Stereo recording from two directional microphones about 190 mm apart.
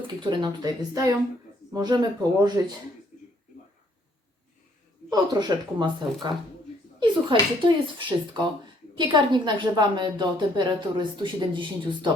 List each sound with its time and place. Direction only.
0.2 s a woman's voice: 25° right (ahead or behind)
5.1 s a woman's voice: 20° right (ahead or behind)
7.0 s a woman's voice: 25° right (ahead or behind)